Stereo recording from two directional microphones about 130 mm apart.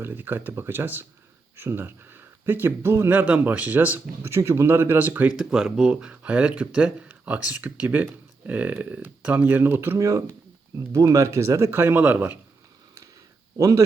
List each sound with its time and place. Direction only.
0.0 s speech: 15° right (ahead or behind)
13.6 s speech: 25° right (ahead or behind)